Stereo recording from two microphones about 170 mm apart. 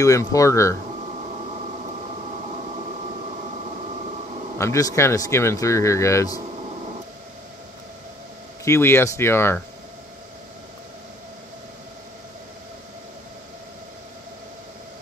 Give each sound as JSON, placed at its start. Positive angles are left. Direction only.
{"t": 0.0, "sound": "speech", "side_deg": 20}
{"t": 4.6, "sound": "speech", "side_deg": 15}
{"t": 8.6, "sound": "speech", "side_deg": 15}